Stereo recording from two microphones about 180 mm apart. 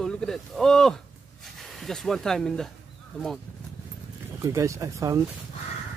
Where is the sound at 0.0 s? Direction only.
5° left (ahead or behind).